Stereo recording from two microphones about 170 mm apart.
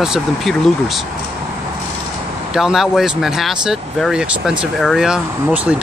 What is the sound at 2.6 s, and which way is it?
Speech, centre (ahead or behind).